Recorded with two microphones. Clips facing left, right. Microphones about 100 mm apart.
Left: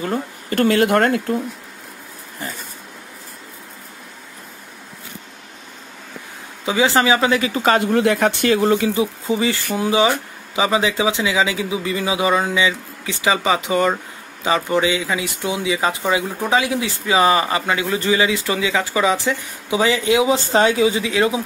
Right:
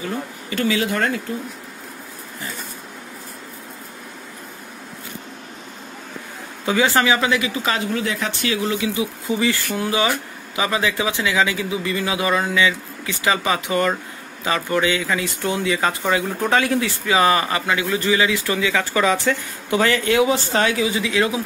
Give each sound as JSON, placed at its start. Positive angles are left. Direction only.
{"t": 0.0, "sound": "speech", "side_deg": 45}
{"t": 6.6, "sound": "speech", "side_deg": 20}